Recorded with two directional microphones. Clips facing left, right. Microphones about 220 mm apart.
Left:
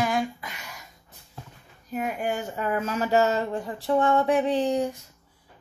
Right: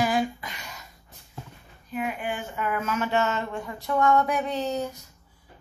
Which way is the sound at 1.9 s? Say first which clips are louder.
Left 2 dB; 40° left (ahead or behind).